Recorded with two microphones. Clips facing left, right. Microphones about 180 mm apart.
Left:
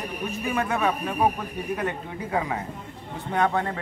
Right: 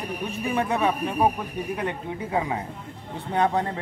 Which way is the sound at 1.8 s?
15° right (ahead or behind).